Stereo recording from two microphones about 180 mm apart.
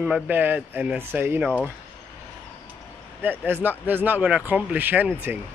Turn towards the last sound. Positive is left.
turn(degrees=-10)  # may be behind; listen again after turning